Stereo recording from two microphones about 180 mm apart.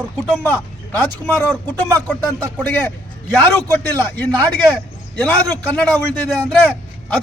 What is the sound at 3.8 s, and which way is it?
A man's voice, 10° left (ahead or behind).